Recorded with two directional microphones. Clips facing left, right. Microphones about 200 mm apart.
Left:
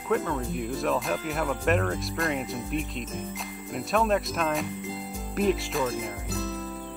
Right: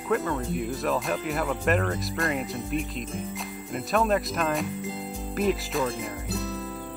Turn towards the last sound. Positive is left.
turn(degrees=0)  # may be behind; listen again after turning